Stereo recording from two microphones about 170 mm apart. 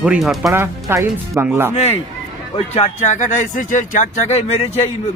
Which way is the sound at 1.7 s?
40° left (ahead or behind).